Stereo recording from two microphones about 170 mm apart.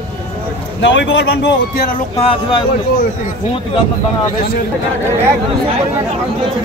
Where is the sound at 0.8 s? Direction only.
90° left.